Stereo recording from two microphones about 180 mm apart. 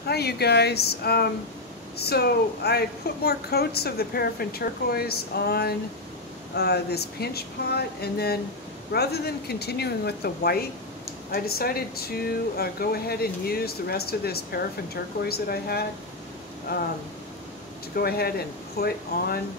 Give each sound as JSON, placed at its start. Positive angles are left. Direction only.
{"t": 0.0, "sound": "a woman's voice", "side_deg": 60}
{"t": 17.9, "sound": "a woman's voice", "side_deg": 60}